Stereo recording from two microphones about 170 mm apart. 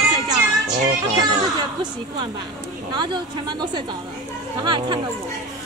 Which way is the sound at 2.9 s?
25° right (ahead or behind).